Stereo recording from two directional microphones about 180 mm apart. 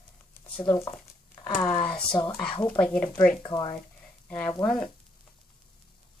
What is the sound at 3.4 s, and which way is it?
Speech, 25° left (ahead or behind).